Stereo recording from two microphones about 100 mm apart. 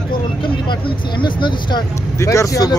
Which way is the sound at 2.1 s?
30° left (ahead or behind).